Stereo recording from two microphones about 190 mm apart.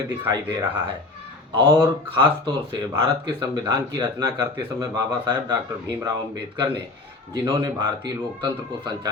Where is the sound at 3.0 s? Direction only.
20° right (ahead or behind).